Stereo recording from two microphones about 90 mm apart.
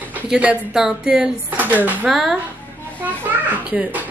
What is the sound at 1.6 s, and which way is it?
Speech, 20° right (ahead or behind).